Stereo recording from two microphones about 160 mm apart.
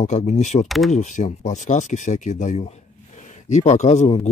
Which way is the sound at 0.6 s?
Centre (ahead or behind).